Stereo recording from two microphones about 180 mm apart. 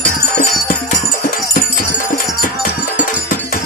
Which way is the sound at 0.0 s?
45° left (ahead or behind).